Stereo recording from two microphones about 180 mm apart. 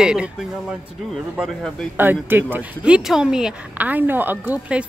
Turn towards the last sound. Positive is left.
turn(degrees=-10)  # may be behind; listen again after turning